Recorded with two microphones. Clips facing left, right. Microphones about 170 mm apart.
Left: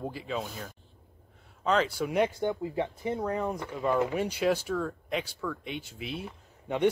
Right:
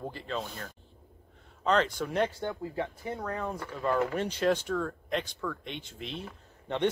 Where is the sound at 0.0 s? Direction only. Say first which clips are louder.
Left 2 dB; 5° left (ahead or behind).